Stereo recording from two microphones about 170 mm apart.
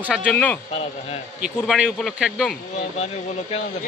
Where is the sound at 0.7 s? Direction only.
35° left (ahead or behind).